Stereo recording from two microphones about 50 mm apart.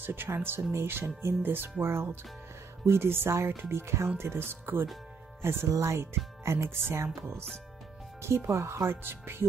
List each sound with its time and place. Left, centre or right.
0.0 s speech: right
1.8 s speech: right
5.4 s speech: right
8.5 s speech: right
9.0 s speech: right